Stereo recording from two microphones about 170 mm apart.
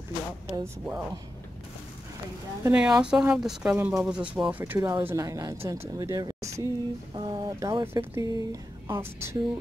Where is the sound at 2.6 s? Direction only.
5° right (ahead or behind).